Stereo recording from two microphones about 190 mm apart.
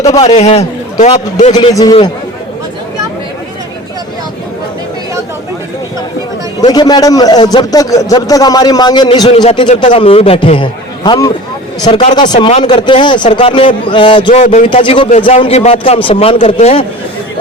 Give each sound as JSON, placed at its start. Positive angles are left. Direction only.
{"t": 0.1, "sound": "a man's voice", "side_deg": 25}
{"t": 0.3, "sound": "a man's voice", "side_deg": 35}
{"t": 1.5, "sound": "a man's voice", "side_deg": 20}
{"t": 6.7, "sound": "a man's voice", "side_deg": 20}
{"t": 14.3, "sound": "a man's voice", "side_deg": 40}
{"t": 14.8, "sound": "a man's voice", "side_deg": 25}